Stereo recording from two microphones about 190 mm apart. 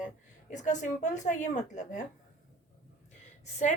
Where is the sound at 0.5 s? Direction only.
40° left (ahead or behind).